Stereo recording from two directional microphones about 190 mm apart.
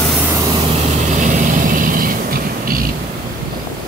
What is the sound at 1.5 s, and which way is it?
Vehicle, 45° right (ahead or behind).